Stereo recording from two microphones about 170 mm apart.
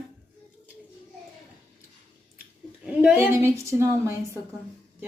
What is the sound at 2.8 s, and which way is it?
A woman's voice, 5° right (ahead or behind).